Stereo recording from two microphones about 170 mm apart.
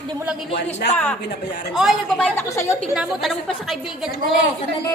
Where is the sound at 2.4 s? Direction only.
15° left (ahead or behind).